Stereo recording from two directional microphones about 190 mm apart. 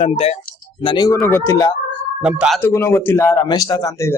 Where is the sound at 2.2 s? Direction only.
5° right (ahead or behind).